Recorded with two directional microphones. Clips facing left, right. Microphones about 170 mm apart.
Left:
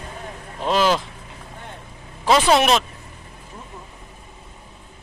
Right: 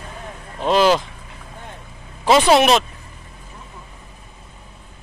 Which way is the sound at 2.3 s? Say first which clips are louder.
Right 3 dB; 5° right (ahead or behind).